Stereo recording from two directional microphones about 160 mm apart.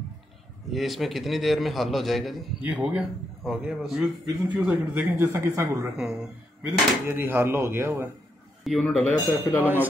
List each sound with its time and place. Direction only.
0.7 s a man's voice: centre (ahead or behind); by 5.9 s 15° right (ahead or behind)
5.9 s speech: 5° right (ahead or behind)
8.6 s speech: 5° left (ahead or behind)